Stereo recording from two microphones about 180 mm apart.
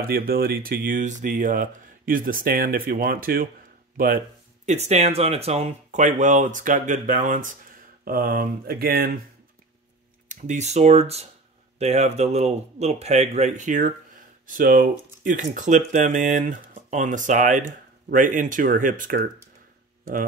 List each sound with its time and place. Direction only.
0.0 s speech: 55° right (ahead or behind)
4.6 s speech: 40° right (ahead or behind); by 9.1 s 55° right (ahead or behind)
10.2 s speech: 40° right (ahead or behind)